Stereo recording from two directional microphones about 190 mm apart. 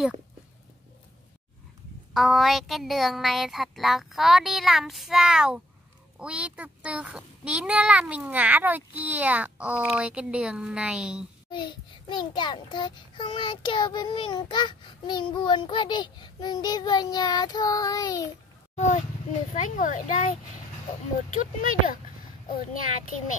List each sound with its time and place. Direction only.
2.1 s a child's voice: centre (ahead or behind)
11.5 s a child's voice: 25° left (ahead or behind)
19.5 s a child's voice: 45° left (ahead or behind)
21.4 s a child's voice: 45° left (ahead or behind)